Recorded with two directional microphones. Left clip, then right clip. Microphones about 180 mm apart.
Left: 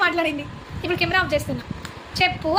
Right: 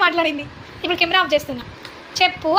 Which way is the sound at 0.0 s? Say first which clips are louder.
Right 3 dB; 5° right (ahead or behind).